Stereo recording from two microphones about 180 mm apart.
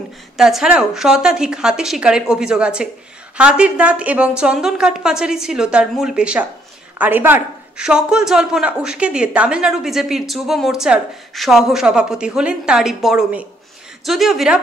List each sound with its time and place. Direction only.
0.4 s a man's voice: centre (ahead or behind)